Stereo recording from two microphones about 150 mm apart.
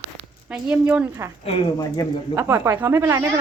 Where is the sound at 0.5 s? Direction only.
10° right (ahead or behind).